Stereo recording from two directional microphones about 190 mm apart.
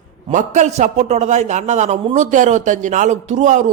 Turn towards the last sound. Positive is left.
turn(degrees=-40)  # may be behind; listen again after turning